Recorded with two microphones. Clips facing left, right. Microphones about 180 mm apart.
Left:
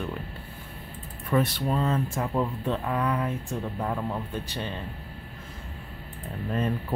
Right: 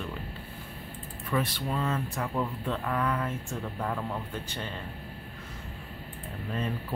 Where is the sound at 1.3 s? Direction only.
35° left (ahead or behind); by 4.0 s 10° left (ahead or behind).